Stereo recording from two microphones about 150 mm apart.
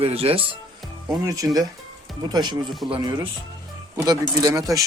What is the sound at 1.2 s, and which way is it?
Speech, 25° right (ahead or behind).